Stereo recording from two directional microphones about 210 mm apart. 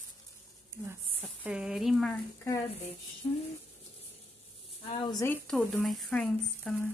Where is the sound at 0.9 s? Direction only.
5° right (ahead or behind).